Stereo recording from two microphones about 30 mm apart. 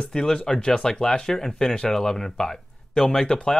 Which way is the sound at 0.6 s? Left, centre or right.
Left.